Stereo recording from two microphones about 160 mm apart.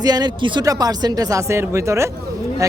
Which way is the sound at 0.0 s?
25° right (ahead or behind).